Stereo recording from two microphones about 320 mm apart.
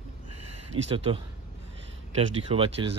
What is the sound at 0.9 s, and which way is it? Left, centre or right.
Speech, centre.